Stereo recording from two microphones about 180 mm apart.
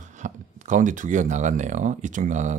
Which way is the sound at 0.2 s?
45° right (ahead or behind).